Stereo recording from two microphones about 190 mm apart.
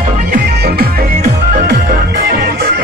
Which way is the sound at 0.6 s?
55° right (ahead or behind).